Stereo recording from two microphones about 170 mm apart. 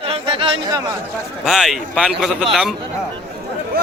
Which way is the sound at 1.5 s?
Centre (ahead or behind).